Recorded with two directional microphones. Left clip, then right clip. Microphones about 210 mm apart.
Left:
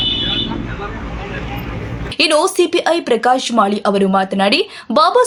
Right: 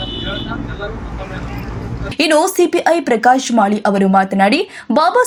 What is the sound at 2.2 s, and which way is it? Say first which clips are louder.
Speech: right 1 dB; centre (ahead or behind).